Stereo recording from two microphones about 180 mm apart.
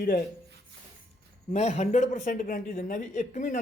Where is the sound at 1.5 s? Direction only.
40° left (ahead or behind).